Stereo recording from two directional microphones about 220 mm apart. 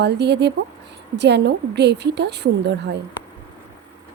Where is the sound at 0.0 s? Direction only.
50° right (ahead or behind).